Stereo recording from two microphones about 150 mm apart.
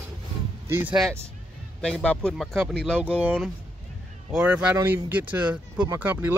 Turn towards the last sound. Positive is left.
turn(degrees=-10)  # may be behind; listen again after turning